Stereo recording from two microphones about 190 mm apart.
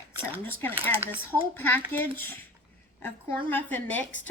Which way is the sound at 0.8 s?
10° right (ahead or behind).